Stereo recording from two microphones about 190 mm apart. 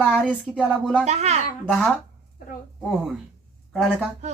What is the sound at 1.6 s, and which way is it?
Speech, centre (ahead or behind).